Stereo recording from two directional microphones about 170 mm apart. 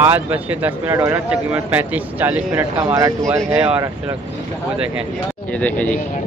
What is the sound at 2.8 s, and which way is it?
Speech, 20° right (ahead or behind).